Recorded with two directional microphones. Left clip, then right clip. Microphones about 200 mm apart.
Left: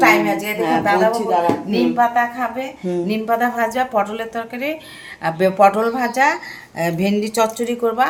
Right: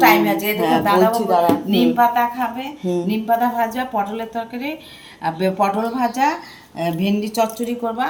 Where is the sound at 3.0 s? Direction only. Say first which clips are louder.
Even; 40° left (ahead or behind).